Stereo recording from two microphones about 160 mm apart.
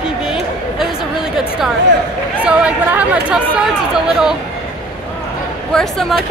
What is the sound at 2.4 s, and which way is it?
Speech, 10° right (ahead or behind).